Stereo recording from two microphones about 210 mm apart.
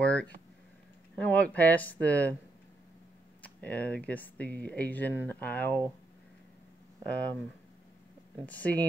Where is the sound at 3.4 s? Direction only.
5° left (ahead or behind).